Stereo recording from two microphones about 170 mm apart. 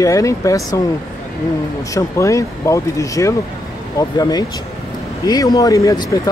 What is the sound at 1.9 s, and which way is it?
Speech, 20° left (ahead or behind).